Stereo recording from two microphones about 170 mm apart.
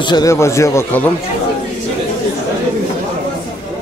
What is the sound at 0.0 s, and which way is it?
A man's voice, 25° left (ahead or behind).